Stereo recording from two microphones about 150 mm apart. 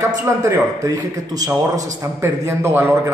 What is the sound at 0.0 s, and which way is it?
A man's voice, 20° right (ahead or behind).